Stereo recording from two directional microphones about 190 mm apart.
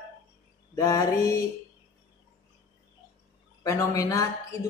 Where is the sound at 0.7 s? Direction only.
15° left (ahead or behind).